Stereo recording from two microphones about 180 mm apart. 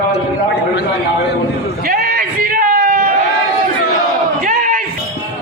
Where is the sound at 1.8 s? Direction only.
55° right (ahead or behind).